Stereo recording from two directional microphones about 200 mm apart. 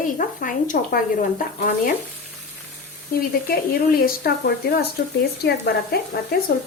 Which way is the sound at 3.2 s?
50° left (ahead or behind).